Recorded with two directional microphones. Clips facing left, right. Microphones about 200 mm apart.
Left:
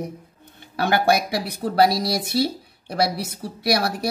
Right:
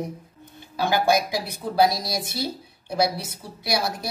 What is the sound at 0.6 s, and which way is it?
Speech, 60° left (ahead or behind).